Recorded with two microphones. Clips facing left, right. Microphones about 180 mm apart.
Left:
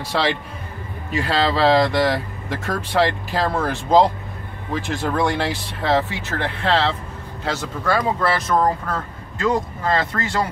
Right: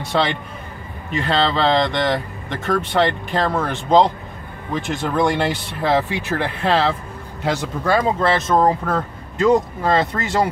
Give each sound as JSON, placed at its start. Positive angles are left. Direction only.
{"t": 0.1, "sound": "speech", "side_deg": 0}
{"t": 6.0, "sound": "speech", "side_deg": -10}